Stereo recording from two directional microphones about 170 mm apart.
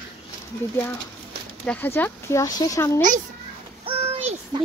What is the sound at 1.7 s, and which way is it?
Speech, 10° left (ahead or behind).